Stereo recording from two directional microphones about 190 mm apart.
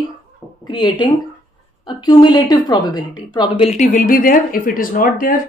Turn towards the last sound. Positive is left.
turn(degrees=45)  # may be behind; listen again after turning